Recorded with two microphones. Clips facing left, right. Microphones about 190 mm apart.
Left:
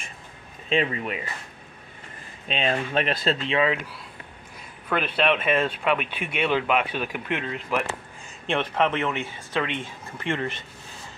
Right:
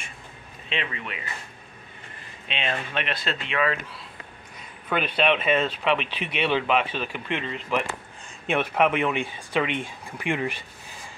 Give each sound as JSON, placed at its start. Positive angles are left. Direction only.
{"t": 0.7, "sound": "speech", "side_deg": 40}
{"t": 2.4, "sound": "speech", "side_deg": 40}
{"t": 4.8, "sound": "speech", "side_deg": 0}
{"t": 6.1, "sound": "speech", "side_deg": 50}
{"t": 6.4, "sound": "speech", "side_deg": 5}
{"t": 8.5, "sound": "speech", "side_deg": -10}